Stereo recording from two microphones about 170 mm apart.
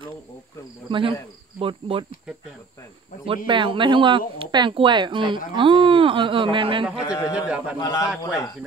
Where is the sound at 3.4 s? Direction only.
30° right (ahead or behind).